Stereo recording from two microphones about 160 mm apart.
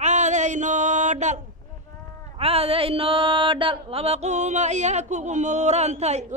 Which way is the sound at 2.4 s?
40° right (ahead or behind).